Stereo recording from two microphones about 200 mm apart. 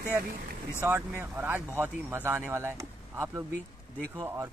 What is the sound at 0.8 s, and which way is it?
Speech, 10° right (ahead or behind).